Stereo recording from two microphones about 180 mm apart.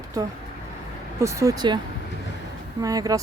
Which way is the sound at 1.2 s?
15° right (ahead or behind).